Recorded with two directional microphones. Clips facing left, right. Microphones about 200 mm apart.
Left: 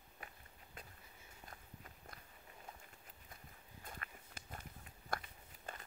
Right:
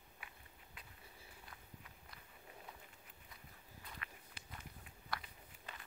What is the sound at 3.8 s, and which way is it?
Walk, 45° left (ahead or behind).